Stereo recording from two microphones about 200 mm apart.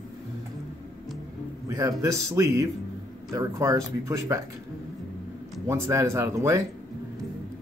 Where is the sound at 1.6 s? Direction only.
15° right (ahead or behind).